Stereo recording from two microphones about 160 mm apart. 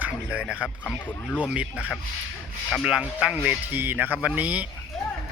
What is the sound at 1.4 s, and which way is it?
Speech, 10° right (ahead or behind).